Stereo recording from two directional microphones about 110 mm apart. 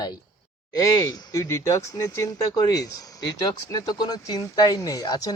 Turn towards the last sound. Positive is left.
turn(degrees=35)  # may be behind; listen again after turning